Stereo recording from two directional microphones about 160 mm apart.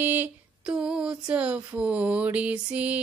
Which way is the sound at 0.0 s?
10° right (ahead or behind).